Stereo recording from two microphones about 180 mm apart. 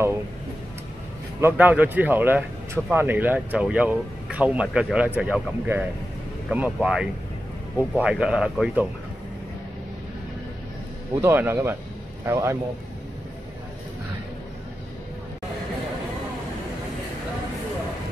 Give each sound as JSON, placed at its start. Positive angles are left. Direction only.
{"t": 1.4, "sound": "speech", "side_deg": -10}
{"t": 11.1, "sound": "speech", "side_deg": -15}